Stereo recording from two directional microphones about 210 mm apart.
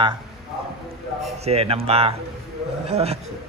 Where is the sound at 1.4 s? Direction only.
30° right (ahead or behind).